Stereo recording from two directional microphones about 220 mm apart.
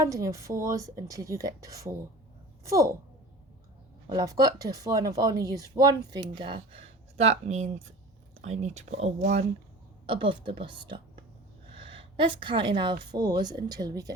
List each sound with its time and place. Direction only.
0.0 s speech: 15° right (ahead or behind)
4.0 s a woman's voice: 15° right (ahead or behind)